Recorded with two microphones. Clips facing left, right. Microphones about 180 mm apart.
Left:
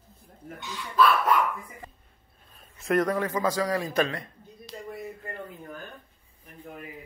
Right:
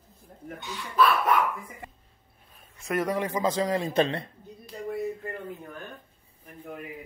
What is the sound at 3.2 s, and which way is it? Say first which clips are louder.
A man's voice: even; 20° right (ahead or behind).